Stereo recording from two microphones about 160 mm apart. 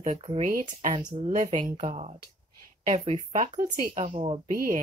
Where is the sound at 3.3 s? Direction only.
50° right (ahead or behind).